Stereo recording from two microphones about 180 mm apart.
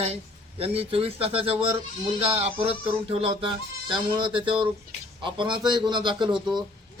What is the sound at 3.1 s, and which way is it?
Speech, 30° right (ahead or behind).